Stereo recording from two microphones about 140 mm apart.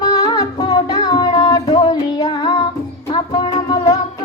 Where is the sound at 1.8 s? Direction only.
25° left (ahead or behind).